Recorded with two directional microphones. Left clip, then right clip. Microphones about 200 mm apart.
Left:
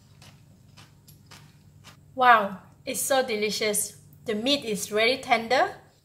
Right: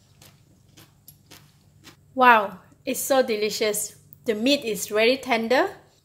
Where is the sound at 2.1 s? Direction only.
45° right (ahead or behind).